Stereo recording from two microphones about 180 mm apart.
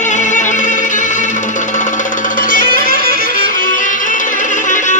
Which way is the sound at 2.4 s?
50° left (ahead or behind).